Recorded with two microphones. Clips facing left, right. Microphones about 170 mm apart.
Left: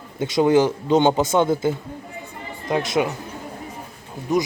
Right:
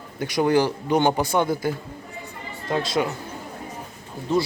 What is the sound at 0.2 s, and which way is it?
Speech, 20° left (ahead or behind).